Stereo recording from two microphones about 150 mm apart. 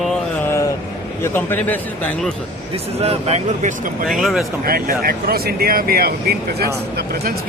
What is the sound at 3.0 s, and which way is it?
Speech, 45° right (ahead or behind).